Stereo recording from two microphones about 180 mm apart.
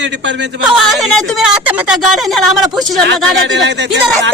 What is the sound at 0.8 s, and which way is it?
A woman's voice, centre (ahead or behind).